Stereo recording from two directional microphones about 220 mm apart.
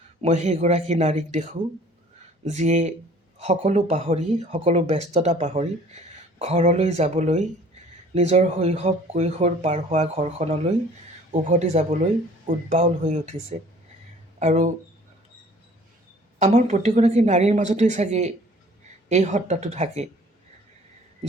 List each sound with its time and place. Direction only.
0.2 s speech: 30° right (ahead or behind)
14.3 s speech: 30° right (ahead or behind)
16.4 s speech: 30° right (ahead or behind)